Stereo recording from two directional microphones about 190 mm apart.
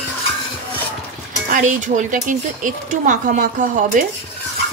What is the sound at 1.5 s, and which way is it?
Speech, 40° right (ahead or behind).